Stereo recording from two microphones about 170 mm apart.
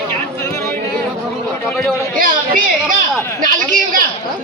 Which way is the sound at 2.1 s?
55° right (ahead or behind).